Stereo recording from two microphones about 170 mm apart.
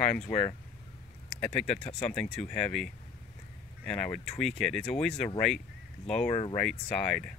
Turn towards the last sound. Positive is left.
turn(degrees=5)  # may be behind; listen again after turning